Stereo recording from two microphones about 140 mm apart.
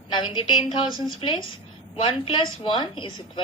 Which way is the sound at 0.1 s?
35° left (ahead or behind).